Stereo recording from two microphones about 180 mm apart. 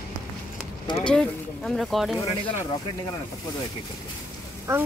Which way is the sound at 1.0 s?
5° left (ahead or behind).